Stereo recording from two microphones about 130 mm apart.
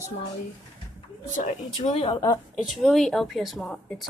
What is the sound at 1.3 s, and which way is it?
Speech, 65° left (ahead or behind).